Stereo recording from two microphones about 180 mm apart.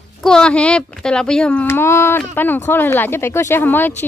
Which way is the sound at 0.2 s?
5° left (ahead or behind).